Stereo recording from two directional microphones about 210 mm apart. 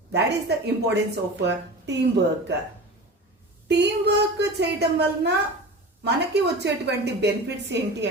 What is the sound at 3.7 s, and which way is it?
Speech, 55° right (ahead or behind).